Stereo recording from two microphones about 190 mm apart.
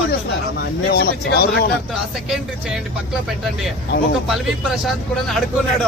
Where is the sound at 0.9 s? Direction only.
55° left (ahead or behind).